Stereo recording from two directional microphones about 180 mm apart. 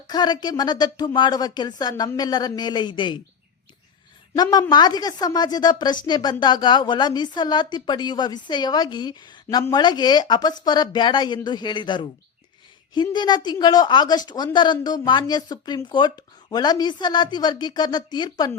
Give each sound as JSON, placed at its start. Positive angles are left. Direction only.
{"t": 0.1, "sound": "a woman's voice", "side_deg": 25}
{"t": 4.4, "sound": "a woman's voice", "side_deg": 15}